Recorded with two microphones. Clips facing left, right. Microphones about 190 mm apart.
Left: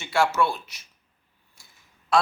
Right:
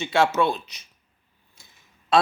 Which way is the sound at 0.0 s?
20° right (ahead or behind).